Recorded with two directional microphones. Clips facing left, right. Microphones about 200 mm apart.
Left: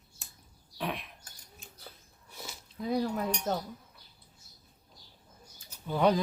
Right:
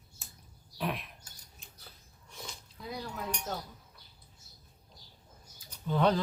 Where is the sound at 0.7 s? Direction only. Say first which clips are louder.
Even; centre (ahead or behind).